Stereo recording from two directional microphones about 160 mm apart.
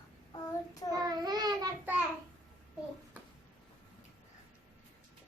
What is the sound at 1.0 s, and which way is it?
Child singing, 25° right (ahead or behind).